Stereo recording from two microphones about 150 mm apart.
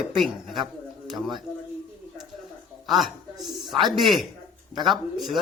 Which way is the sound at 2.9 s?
Centre (ahead or behind).